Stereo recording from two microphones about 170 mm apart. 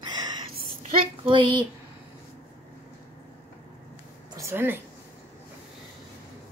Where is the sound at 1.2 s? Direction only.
30° right (ahead or behind).